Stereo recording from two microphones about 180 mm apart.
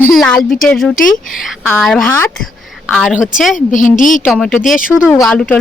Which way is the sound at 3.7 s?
45° left (ahead or behind).